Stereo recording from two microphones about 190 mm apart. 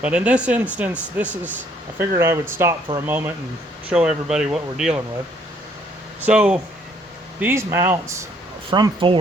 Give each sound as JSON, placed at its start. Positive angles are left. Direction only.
{"t": 0.0, "sound": "speech", "side_deg": -5}
{"t": 6.2, "sound": "speech", "side_deg": -5}
{"t": 8.7, "sound": "speech", "side_deg": -25}